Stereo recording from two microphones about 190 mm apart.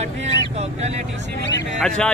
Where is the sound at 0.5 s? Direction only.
35° right (ahead or behind).